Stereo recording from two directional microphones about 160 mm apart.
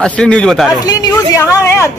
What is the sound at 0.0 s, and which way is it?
Speech, 5° left (ahead or behind).